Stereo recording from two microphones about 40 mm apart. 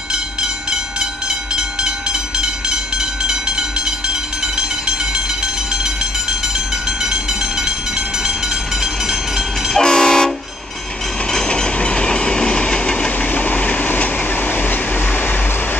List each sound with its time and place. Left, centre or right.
0.1 s train: centre
8.8 s train: centre
9.8 s train: centre
11.3 s train: left
13.3 s train: left